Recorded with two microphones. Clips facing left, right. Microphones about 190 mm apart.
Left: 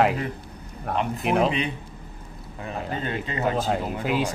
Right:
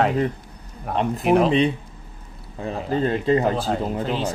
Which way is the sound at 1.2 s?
Centre (ahead or behind).